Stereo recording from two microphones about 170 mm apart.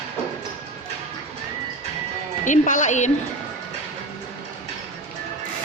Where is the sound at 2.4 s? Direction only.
50° left (ahead or behind).